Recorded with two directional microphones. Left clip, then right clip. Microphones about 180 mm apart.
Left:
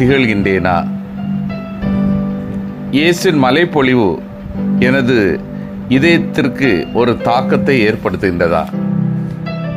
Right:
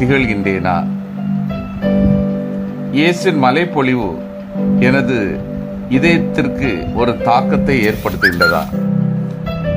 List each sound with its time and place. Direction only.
0.0 s speech: 20° left (ahead or behind)
2.9 s speech: 20° left (ahead or behind)